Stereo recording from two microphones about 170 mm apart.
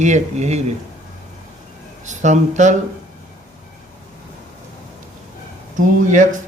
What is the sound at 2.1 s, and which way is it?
Speech, 45° right (ahead or behind).